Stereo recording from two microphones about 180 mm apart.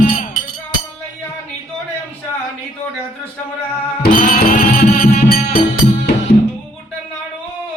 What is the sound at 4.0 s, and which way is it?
Music, 55° left (ahead or behind).